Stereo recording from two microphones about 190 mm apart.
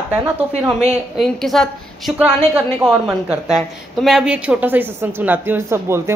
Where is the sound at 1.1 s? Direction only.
Centre (ahead or behind).